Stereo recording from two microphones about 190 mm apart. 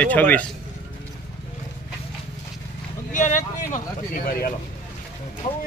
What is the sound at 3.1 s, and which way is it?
Vehicle, 40° left (ahead or behind).